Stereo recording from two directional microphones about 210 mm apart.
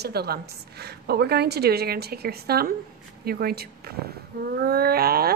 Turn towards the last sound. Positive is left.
turn(degrees=-45)  # may be behind; listen again after turning